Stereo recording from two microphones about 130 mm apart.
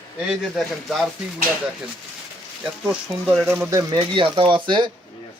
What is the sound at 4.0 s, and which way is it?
Speech, 40° right (ahead or behind).